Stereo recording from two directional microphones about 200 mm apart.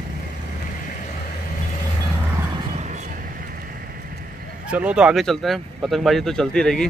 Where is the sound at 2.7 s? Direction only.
35° right (ahead or behind).